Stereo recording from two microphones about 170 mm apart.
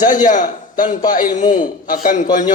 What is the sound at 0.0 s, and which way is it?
A man's voice, 50° left (ahead or behind).